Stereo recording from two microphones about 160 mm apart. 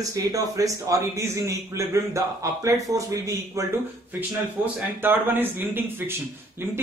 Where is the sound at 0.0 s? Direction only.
20° right (ahead or behind).